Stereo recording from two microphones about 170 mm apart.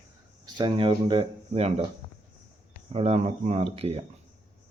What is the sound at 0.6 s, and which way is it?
Speech, 30° right (ahead or behind).